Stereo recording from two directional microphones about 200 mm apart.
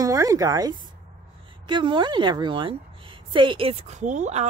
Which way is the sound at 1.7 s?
25° right (ahead or behind).